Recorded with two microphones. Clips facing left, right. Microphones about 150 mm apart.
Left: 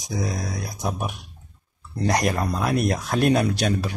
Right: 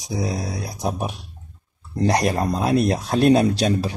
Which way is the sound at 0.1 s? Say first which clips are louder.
Right 2 dB; 35° right (ahead or behind).